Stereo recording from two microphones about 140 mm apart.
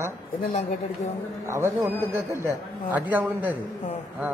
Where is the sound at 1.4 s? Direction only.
20° right (ahead or behind).